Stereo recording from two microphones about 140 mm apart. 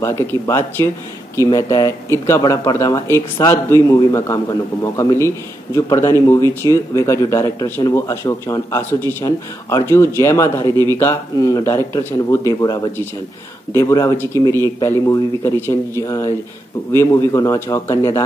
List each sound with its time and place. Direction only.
0.0 s a man's voice: 20° left (ahead or behind)